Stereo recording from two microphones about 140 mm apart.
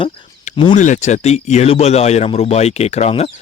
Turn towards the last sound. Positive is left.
turn(degrees=50)  # may be behind; listen again after turning